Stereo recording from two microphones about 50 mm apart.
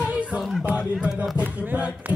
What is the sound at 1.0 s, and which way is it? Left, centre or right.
Music, right.